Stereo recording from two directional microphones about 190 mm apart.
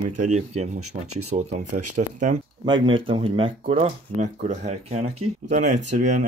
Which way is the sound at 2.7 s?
25° right (ahead or behind).